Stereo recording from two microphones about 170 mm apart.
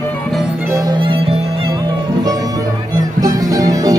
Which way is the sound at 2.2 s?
20° right (ahead or behind).